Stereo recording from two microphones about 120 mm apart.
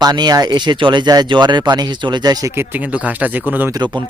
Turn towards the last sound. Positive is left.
turn(degrees=-40)  # may be behind; listen again after turning